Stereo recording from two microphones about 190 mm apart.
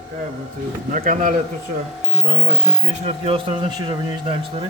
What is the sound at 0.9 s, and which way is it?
Speech, 45° right (ahead or behind).